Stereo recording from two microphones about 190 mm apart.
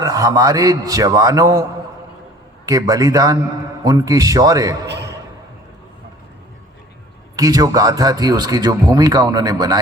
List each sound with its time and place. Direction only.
0.0 s a man's voice: 20° right (ahead or behind)
2.6 s a man's voice: 20° right (ahead or behind)
4.9 s a sound: 65° right (ahead or behind)
7.3 s a man's voice: 20° right (ahead or behind)